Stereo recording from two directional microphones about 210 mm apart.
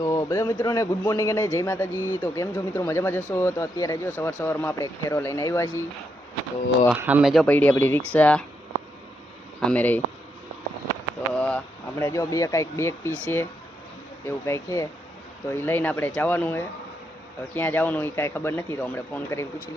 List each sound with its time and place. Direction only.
0.0 s speech: 15° left (ahead or behind)
1.9 s speech: 10° right (ahead or behind)
2.2 s speech: 15° left (ahead or behind)
6.9 s speech: 10° right (ahead or behind)
9.6 s speech: 5° left (ahead or behind)
11.3 s speech: 5° left (ahead or behind)
13.1 s speech: 10° right (ahead or behind)
14.3 s speech: 15° left (ahead or behind)